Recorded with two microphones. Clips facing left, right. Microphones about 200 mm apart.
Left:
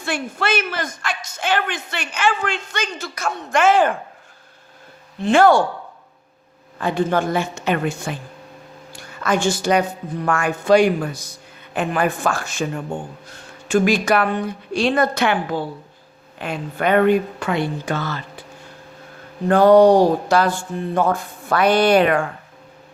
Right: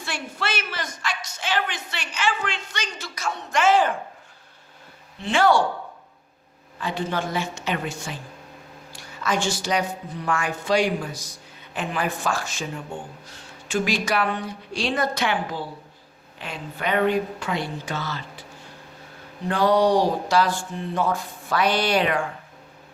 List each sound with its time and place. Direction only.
0.0 s a woman's voice: 50° left (ahead or behind)
5.2 s a woman's voice: 50° left (ahead or behind)
6.7 s a woman's voice: 50° left (ahead or behind)
8.9 s a sound: 55° left (ahead or behind)
10.2 s a woman's voice: 55° left (ahead or behind)
19.5 s a woman's voice: 50° left (ahead or behind)